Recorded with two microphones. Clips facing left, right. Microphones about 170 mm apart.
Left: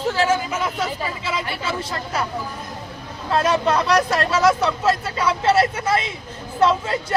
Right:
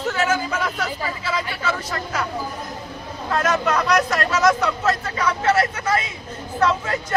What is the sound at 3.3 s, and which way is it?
Speech, 30° left (ahead or behind).